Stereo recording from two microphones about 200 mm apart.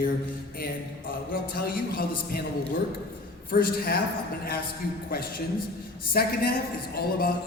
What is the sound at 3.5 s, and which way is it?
Speech, 50° left (ahead or behind).